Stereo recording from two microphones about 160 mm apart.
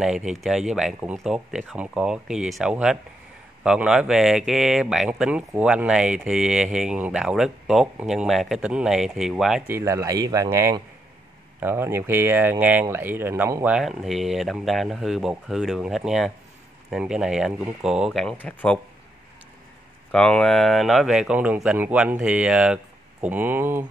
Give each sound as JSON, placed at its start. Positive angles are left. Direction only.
{"t": 0.0, "sound": "speech", "side_deg": -5}
{"t": 9.7, "sound": "speech", "side_deg": -15}
{"t": 20.1, "sound": "speech", "side_deg": 5}